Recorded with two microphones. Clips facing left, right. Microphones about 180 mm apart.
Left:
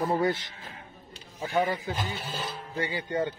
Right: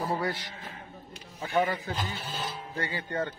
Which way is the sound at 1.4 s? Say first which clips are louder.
Even; 10° left (ahead or behind).